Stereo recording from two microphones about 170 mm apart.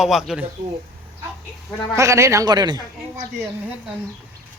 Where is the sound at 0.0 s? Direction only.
Centre (ahead or behind).